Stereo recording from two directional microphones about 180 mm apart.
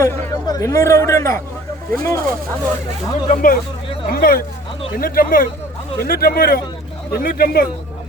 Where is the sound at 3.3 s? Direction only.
50° left (ahead or behind).